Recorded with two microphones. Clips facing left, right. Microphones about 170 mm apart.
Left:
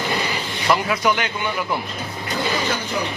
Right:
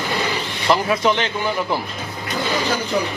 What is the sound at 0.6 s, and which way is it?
Speech, 25° right (ahead or behind).